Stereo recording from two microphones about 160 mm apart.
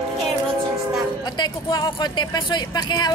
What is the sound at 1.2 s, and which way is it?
Speech, 25° left (ahead or behind).